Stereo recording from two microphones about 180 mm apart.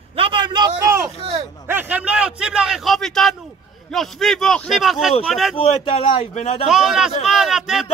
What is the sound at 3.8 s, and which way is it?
A man's voice, centre (ahead or behind).